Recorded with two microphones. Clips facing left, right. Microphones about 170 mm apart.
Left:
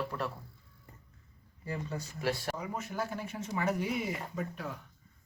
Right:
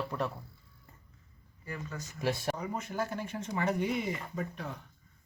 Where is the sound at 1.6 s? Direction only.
30° left (ahead or behind).